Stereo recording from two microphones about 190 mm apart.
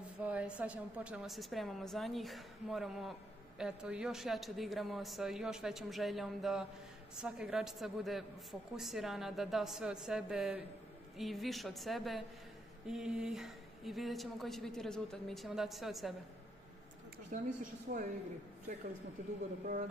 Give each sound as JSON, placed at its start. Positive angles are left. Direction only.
{"t": 0.2, "sound": "a woman's voice", "side_deg": -5}
{"t": 17.3, "sound": "a woman's voice", "side_deg": -45}